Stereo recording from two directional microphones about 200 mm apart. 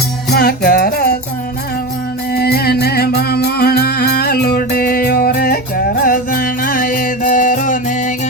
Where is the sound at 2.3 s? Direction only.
50° left (ahead or behind).